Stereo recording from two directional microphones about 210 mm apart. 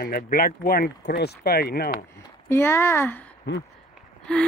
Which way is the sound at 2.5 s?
10° left (ahead or behind).